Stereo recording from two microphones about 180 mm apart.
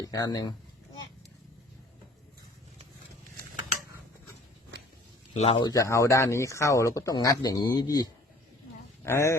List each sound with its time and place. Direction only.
0.0 s speech: 20° left (ahead or behind)
5.4 s speech: 25° left (ahead or behind)
9.0 s speech: 15° left (ahead or behind)